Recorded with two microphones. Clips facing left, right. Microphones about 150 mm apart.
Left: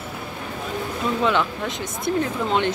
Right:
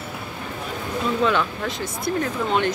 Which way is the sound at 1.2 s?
20° left (ahead or behind).